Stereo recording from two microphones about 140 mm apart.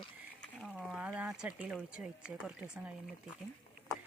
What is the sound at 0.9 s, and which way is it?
Speech, 10° right (ahead or behind).